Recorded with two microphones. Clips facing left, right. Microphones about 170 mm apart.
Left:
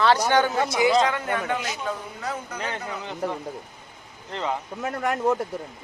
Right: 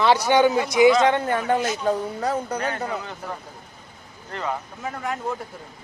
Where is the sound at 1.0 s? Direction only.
35° right (ahead or behind).